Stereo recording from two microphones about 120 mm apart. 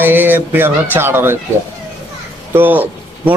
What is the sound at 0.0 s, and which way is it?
Speech, 15° right (ahead or behind).